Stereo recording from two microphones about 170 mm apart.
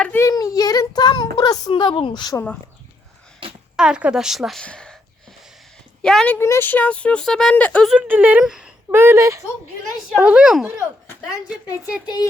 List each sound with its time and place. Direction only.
0.0 s child singing: 15° left (ahead or behind)
1.4 s a woman's voice: 25° left (ahead or behind)
3.8 s a woman's voice: 5° right (ahead or behind)
6.0 s speech: 5° left (ahead or behind)
7.9 s a woman's voice: 10° right (ahead or behind)
10.1 s a woman's voice: 5° right (ahead or behind)
12.0 s a woman's voice: 25° left (ahead or behind)